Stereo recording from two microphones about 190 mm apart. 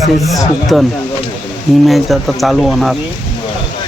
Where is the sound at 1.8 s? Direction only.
Centre (ahead or behind).